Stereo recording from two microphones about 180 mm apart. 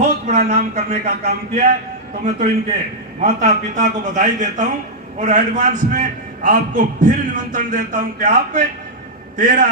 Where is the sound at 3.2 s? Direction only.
40° right (ahead or behind).